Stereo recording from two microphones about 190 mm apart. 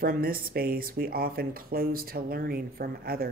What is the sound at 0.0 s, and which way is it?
Speech, 50° right (ahead or behind).